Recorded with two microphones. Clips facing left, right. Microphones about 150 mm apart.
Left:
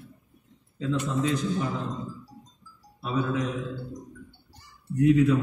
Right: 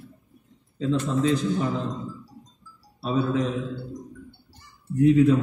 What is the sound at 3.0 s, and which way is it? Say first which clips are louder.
Speech: right 3 dB; 35° right (ahead or behind).